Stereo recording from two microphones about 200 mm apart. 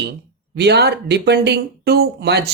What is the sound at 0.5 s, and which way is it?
Speech, 55° right (ahead or behind).